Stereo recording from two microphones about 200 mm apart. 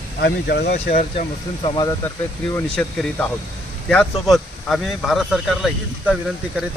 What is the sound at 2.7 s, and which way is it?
Speech, 5° left (ahead or behind).